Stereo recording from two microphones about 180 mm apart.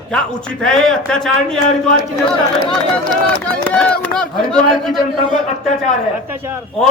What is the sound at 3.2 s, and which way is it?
A man's voice, 10° left (ahead or behind).